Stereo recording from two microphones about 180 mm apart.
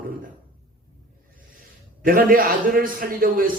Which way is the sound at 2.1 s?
55° right (ahead or behind).